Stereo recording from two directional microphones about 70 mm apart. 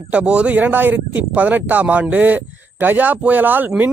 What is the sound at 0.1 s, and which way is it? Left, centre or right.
Speech, centre.